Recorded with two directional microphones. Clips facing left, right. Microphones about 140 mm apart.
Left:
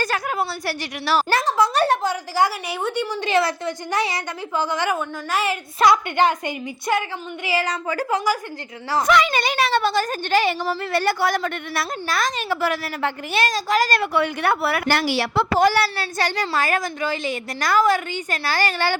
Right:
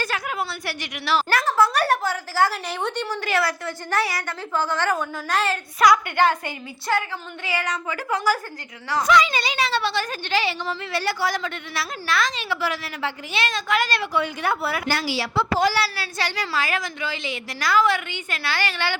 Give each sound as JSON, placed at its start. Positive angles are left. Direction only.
{"t": 0.0, "sound": "a woman's voice", "side_deg": 40}
{"t": 1.3, "sound": "a woman's voice", "side_deg": 20}
{"t": 3.2, "sound": "a woman's voice", "side_deg": 20}
{"t": 5.8, "sound": "a woman's voice", "side_deg": 25}
{"t": 7.4, "sound": "a woman's voice", "side_deg": 30}
{"t": 8.3, "sound": "a woman's voice", "side_deg": 10}
{"t": 9.0, "sound": "a woman's voice", "side_deg": 55}
{"t": 12.0, "sound": "a woman's voice", "side_deg": 45}